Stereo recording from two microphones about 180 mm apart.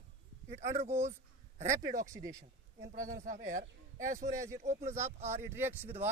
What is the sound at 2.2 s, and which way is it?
Speech, 20° right (ahead or behind).